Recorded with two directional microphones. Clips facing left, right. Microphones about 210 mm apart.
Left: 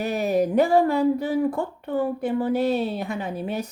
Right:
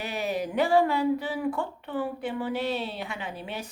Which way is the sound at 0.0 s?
45° left (ahead or behind).